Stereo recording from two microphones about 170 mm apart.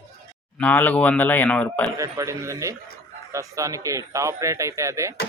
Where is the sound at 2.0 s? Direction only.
20° right (ahead or behind).